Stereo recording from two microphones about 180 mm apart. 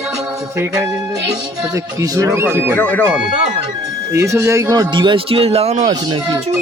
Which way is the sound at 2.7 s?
10° left (ahead or behind).